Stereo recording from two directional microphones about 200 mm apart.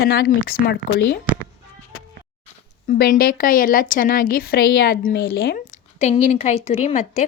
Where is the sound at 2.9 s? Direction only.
50° left (ahead or behind).